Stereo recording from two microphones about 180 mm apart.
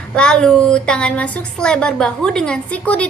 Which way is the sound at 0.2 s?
5° left (ahead or behind).